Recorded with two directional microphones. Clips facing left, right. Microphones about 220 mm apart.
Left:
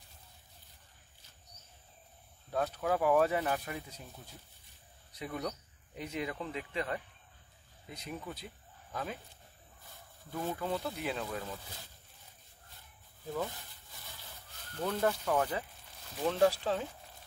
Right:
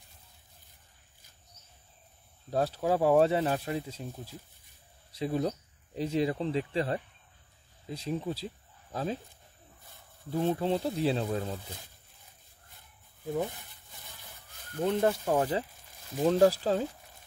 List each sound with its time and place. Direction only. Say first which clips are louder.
2.5 s speech: right 4 dB; 35° right (ahead or behind)
5.1 s speech: right 8 dB; 30° right (ahead or behind)
10.3 s speech: right 7 dB; 30° right (ahead or behind)
14.8 s speech: right 5 dB; 25° right (ahead or behind)